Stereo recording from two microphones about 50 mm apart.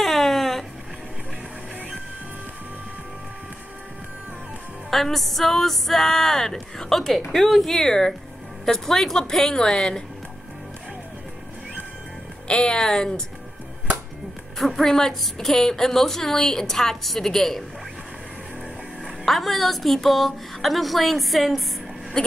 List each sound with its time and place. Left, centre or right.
0.0 s a sound: centre
4.9 s a woman's voice: centre
12.4 s a woman's voice: centre
14.6 s a woman's voice: centre
19.0 s speech: centre